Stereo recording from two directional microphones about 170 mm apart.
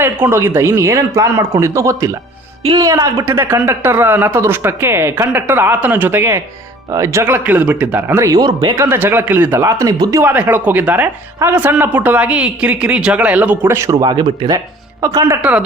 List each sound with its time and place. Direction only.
0.0 s speech: 15° right (ahead or behind)
15.4 s speech: 5° right (ahead or behind)